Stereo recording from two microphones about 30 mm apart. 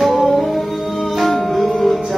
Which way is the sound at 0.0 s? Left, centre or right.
Centre.